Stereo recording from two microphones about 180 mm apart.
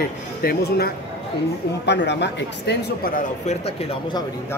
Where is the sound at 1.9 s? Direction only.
75° left (ahead or behind).